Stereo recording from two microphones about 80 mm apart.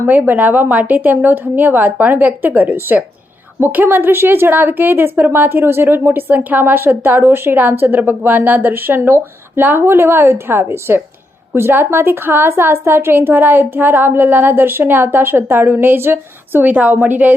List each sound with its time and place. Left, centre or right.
0.1 s a woman's voice: right